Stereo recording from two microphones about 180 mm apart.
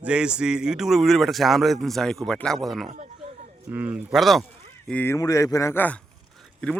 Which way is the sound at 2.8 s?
40° right (ahead or behind).